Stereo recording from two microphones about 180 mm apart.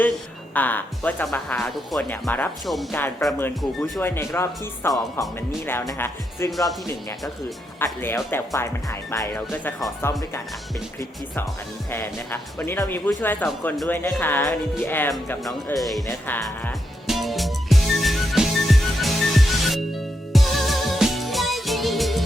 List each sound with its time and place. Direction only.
0.5 s speech: 10° left (ahead or behind)
3.6 s speech: centre (ahead or behind)
4.0 s speech: 15° left (ahead or behind)
8.0 s speech: 10° left (ahead or behind)
11.9 s speech: 10° left (ahead or behind)
15.4 s speech: centre (ahead or behind)
17.1 s music: centre (ahead or behind)